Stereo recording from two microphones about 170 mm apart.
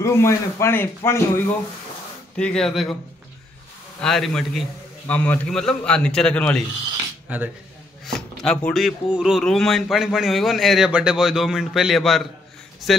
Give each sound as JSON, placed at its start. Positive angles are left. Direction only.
{"t": 0.0, "sound": "speech", "side_deg": 15}
{"t": 2.3, "sound": "speech", "side_deg": 5}
{"t": 4.0, "sound": "speech", "side_deg": 0}
{"t": 7.2, "sound": "speech", "side_deg": -10}
{"t": 8.0, "sound": "speech", "side_deg": 5}